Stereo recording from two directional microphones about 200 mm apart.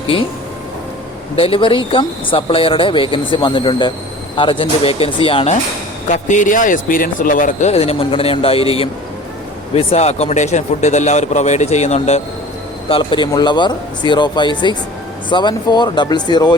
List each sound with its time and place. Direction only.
1.4 s speech: 25° left (ahead or behind)
6.1 s a man's voice: 40° left (ahead or behind); by 16.6 s 20° left (ahead or behind)